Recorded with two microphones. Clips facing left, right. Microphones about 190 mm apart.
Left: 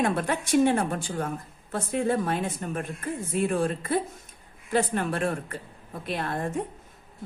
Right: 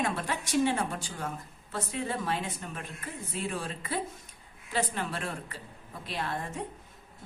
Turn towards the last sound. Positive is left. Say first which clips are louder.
# left 6 dB
turn(degrees=50)  # may be behind; listen again after turning